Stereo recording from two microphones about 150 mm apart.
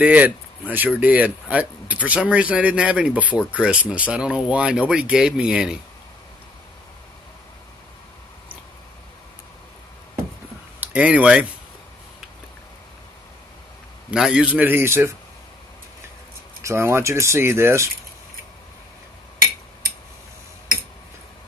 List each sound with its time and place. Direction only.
0.0 s speech: 10° right (ahead or behind)
10.8 s speech: 10° right (ahead or behind)
14.1 s speech: 5° right (ahead or behind)
16.6 s speech: 15° right (ahead or behind)